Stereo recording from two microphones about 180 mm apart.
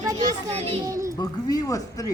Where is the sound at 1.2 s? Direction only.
20° left (ahead or behind).